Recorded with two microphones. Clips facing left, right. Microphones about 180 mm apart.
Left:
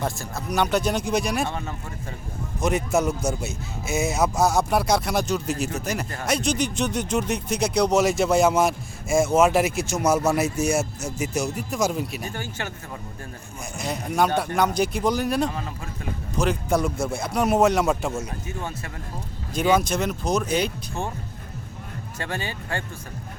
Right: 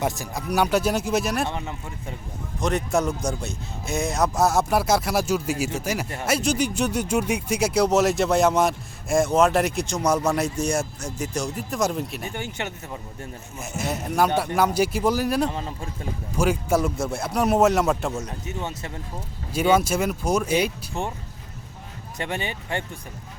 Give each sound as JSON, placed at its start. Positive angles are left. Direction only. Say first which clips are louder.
{"t": 0.0, "sound": "speech", "louder": "right 2 dB", "side_deg": -15}
{"t": 1.5, "sound": "speech", "louder": "even", "side_deg": -15}
{"t": 2.6, "sound": "speech", "louder": "left 1 dB", "side_deg": 5}
{"t": 12.3, "sound": "speech", "louder": "right 1 dB", "side_deg": -20}
{"t": 13.6, "sound": "speech", "louder": "right 2 dB", "side_deg": -5}
{"t": 15.4, "sound": "speech", "louder": "right 1 dB", "side_deg": -30}
{"t": 16.4, "sound": "speech", "louder": "right 1 dB", "side_deg": -5}
{"t": 18.4, "sound": "speech", "louder": "right 1 dB", "side_deg": -20}
{"t": 19.8, "sound": "speech", "louder": "right 1 dB", "side_deg": -5}
{"t": 22.2, "sound": "speech", "louder": "right 2 dB", "side_deg": -20}